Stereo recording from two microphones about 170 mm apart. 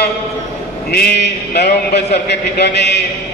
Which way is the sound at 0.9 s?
80° left.